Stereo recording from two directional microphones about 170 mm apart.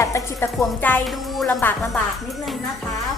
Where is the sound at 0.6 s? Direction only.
5° left (ahead or behind).